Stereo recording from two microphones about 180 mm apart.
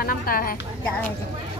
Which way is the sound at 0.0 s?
50° left (ahead or behind).